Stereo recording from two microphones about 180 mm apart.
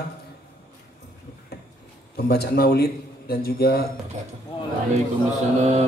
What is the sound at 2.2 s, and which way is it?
A man's voice, 60° left (ahead or behind).